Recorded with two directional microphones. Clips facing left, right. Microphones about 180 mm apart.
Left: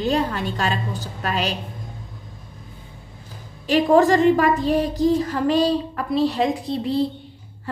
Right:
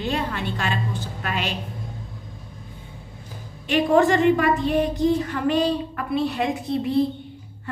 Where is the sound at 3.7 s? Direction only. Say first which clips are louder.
Left 2 dB; 35° left (ahead or behind).